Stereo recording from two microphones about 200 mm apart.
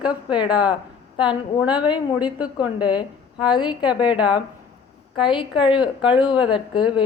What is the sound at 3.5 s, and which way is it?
Speech, 25° left (ahead or behind).